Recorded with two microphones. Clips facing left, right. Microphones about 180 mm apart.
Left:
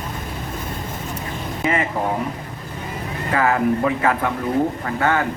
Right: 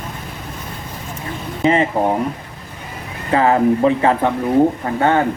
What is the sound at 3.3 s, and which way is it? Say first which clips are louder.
Speech: right 5 dB; 30° right (ahead or behind).